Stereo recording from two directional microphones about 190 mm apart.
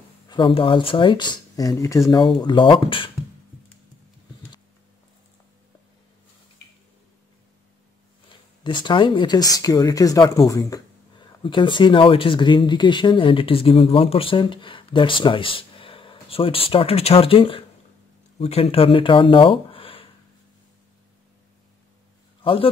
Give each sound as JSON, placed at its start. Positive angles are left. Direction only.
{"t": 0.3, "sound": "speech", "side_deg": 25}
{"t": 8.3, "sound": "speech", "side_deg": 25}
{"t": 22.4, "sound": "a man's voice", "side_deg": 30}